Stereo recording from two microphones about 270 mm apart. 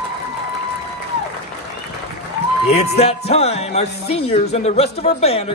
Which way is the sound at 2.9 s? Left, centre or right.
Left.